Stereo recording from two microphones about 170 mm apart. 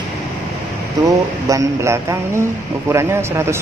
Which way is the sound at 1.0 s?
20° right (ahead or behind).